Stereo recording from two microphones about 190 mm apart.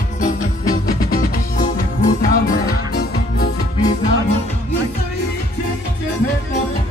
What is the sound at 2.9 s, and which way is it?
Music, 55° left (ahead or behind).